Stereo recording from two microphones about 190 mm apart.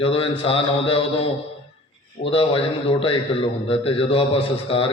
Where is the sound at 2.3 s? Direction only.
30° left (ahead or behind).